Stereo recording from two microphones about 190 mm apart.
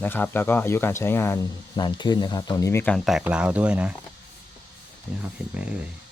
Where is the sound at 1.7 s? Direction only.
25° left (ahead or behind).